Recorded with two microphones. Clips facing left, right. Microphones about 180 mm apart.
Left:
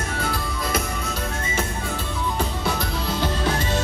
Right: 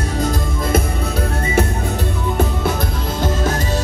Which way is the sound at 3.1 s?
45° right (ahead or behind).